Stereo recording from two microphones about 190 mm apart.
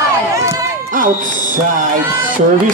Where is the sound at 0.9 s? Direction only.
45° right (ahead or behind).